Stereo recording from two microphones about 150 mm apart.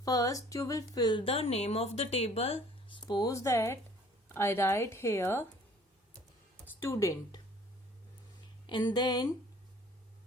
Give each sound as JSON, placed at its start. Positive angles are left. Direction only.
{"t": 0.0, "sound": "a woman's voice", "side_deg": 25}
{"t": 3.1, "sound": "speech", "side_deg": 25}
{"t": 6.7, "sound": "speech", "side_deg": 20}
{"t": 8.6, "sound": "speech", "side_deg": 30}